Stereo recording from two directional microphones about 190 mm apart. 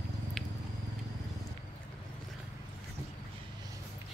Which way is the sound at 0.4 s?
Centre (ahead or behind).